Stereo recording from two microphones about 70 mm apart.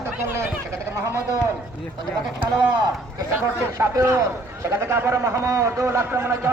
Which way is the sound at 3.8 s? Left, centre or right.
Right.